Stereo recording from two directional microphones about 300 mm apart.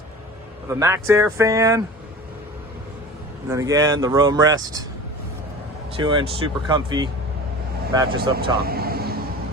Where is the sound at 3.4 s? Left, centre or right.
Centre.